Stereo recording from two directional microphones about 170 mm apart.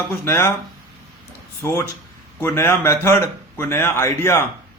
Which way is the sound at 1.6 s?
15° left (ahead or behind).